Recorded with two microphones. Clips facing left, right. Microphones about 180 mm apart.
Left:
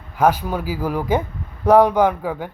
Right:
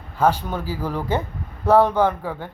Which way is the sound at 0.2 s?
10° left (ahead or behind).